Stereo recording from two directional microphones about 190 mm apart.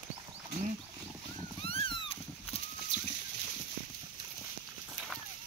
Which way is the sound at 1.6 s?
30° left (ahead or behind).